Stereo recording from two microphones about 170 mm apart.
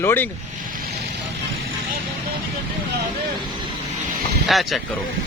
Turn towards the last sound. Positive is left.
turn(degrees=0)  # may be behind; listen again after turning